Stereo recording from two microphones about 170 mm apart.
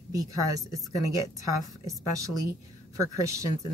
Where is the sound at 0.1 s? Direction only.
20° right (ahead or behind).